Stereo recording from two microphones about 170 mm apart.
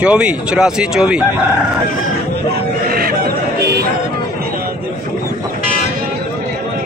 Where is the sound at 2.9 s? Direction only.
60° right (ahead or behind).